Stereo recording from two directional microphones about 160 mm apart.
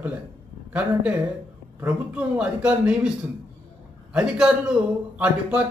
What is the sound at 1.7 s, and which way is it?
A man's voice, 10° right (ahead or behind).